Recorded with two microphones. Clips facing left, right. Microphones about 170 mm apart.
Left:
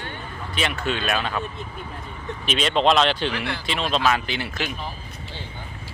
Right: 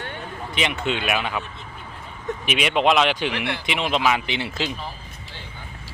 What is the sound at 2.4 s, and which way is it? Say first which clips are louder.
Speech: even; 15° right (ahead or behind).